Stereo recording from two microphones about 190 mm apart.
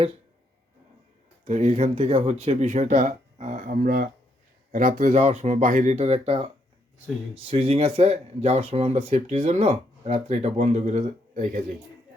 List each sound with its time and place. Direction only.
1.5 s speech: 35° right (ahead or behind)